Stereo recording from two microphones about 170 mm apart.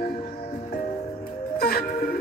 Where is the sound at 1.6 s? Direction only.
60° left (ahead or behind).